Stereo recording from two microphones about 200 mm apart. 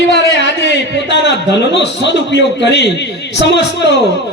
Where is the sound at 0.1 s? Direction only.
60° left (ahead or behind).